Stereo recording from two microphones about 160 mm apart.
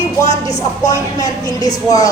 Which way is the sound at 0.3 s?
20° left (ahead or behind).